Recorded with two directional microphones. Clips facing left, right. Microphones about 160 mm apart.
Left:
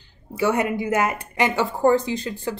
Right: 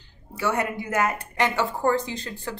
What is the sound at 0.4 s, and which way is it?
Speech, 15° left (ahead or behind).